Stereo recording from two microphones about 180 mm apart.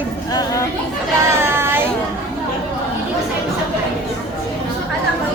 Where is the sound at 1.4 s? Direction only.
15° right (ahead or behind).